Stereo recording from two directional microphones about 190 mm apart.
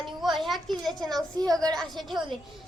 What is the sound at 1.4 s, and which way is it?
Speech, 20° right (ahead or behind).